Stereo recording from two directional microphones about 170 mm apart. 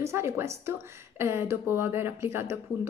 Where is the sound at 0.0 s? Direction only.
15° right (ahead or behind).